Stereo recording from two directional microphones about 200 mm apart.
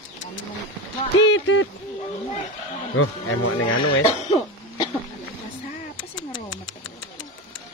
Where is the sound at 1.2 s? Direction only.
75° left (ahead or behind).